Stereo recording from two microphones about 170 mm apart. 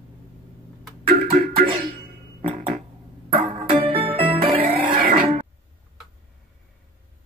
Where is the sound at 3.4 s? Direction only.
25° right (ahead or behind).